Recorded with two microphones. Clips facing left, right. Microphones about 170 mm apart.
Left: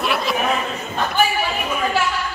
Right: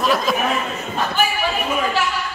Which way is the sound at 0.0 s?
40° right (ahead or behind).